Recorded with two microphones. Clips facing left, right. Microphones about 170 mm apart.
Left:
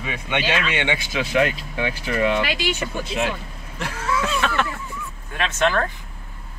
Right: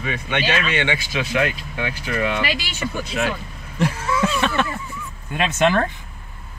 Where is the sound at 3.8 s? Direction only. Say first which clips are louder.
Right 4 dB; 20° right (ahead or behind).